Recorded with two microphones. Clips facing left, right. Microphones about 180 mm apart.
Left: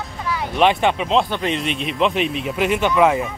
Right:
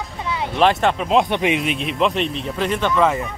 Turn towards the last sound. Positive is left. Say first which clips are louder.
# left 2 dB
turn(degrees=10)  # may be behind; listen again after turning